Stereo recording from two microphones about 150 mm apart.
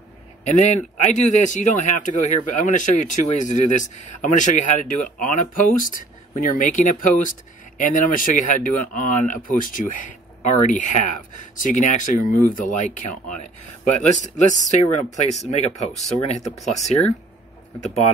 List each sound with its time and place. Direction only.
0.4 s a man's voice: 50° left (ahead or behind)
16.4 s speech: centre (ahead or behind)